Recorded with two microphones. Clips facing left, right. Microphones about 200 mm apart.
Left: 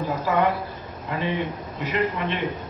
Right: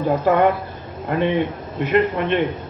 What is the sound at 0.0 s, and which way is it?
A woman's voice, 55° right (ahead or behind).